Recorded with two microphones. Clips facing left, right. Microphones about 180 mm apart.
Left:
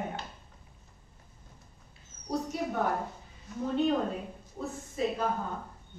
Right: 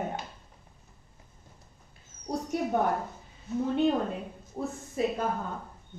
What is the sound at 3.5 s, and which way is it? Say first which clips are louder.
Speech: right 8 dB; 25° right (ahead or behind).